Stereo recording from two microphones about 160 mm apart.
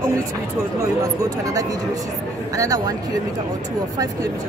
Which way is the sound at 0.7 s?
20° right (ahead or behind).